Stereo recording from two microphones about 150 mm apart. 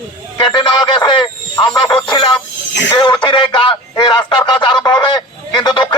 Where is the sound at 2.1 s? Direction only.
30° left (ahead or behind).